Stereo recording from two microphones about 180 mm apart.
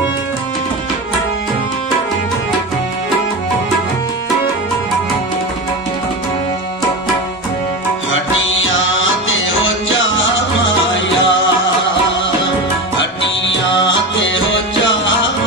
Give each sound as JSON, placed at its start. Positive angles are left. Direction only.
{"t": 8.1, "sound": "music", "side_deg": 90}
{"t": 12.9, "sound": "music", "side_deg": 90}